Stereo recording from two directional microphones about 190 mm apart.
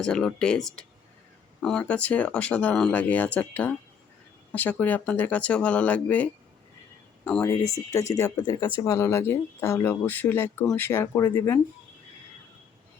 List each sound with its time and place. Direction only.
0.0 s speech: 5° left (ahead or behind)
7.3 s speech: 10° left (ahead or behind)